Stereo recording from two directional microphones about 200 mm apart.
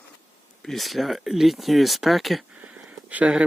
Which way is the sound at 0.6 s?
Centre (ahead or behind).